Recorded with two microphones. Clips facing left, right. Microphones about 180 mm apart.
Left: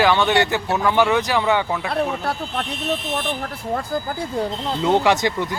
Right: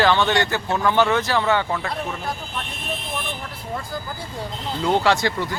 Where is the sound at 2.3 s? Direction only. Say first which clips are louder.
Left 4 dB; 65° left (ahead or behind).